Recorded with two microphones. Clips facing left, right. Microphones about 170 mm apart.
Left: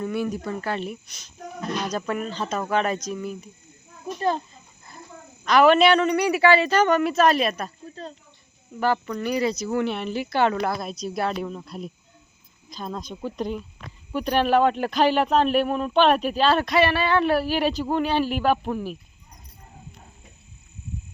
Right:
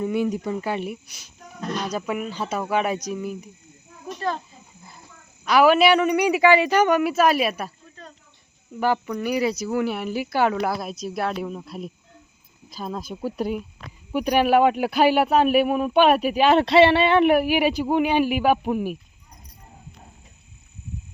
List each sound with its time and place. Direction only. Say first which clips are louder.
0.0 s speech: right 3 dB; 15° right (ahead or behind)
4.0 s a child's voice: left 3 dB; 20° left (ahead or behind)
4.5 s a sound: right 2 dB; 10° right (ahead or behind)
5.5 s speech: even; 5° right (ahead or behind)
8.8 s speech: right 1 dB; 15° right (ahead or behind)
16.6 s speech: right 5 dB; 25° right (ahead or behind)